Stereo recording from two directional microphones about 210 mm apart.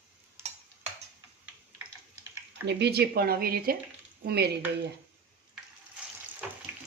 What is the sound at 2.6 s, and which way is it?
Speech, 50° right (ahead or behind).